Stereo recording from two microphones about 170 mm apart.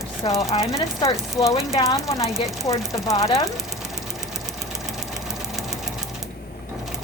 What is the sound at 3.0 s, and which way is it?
Speech, 20° left (ahead or behind).